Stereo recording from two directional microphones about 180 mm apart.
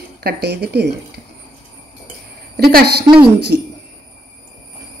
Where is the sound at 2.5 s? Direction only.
60° right (ahead or behind).